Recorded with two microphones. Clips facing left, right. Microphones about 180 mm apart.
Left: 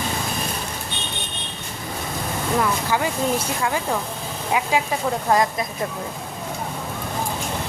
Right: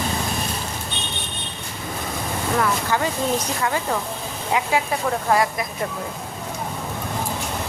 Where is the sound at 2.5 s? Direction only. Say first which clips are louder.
Even; 15° left (ahead or behind).